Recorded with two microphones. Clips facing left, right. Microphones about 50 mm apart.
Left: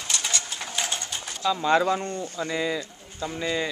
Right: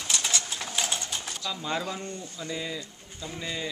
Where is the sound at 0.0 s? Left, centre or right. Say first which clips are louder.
Left 1 dB; centre.